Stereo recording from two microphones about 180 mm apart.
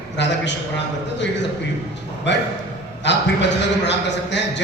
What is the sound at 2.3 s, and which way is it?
A man's voice, 80° left.